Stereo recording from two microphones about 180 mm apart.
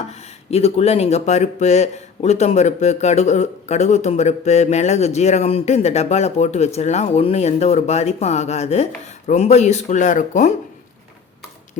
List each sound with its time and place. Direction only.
0.1 s speech: 35° left (ahead or behind)